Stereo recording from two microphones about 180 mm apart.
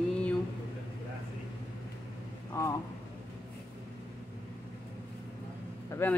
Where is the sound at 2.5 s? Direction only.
15° left (ahead or behind).